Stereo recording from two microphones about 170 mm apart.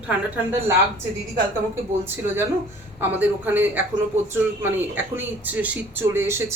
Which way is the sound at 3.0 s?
10° right (ahead or behind).